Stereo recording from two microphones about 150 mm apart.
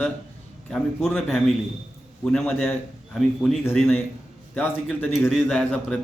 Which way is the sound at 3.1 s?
Centre (ahead or behind).